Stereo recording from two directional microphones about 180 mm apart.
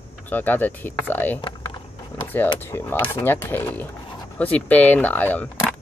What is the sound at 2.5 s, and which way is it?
Speech, 10° left (ahead or behind).